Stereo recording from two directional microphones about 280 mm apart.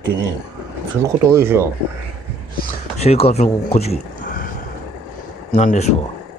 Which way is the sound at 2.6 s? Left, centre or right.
Left.